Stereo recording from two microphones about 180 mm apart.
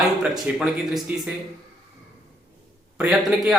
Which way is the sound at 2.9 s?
5° right (ahead or behind).